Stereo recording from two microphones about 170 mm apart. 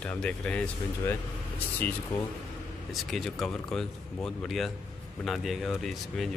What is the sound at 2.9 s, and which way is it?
Speech, centre (ahead or behind).